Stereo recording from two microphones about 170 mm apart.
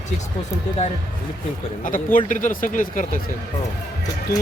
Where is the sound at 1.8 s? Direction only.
50° left (ahead or behind).